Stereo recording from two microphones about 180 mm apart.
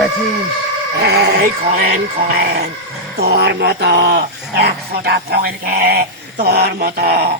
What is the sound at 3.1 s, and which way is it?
Speech, 65° right (ahead or behind).